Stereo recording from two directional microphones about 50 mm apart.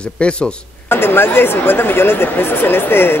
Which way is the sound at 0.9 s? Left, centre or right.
Left.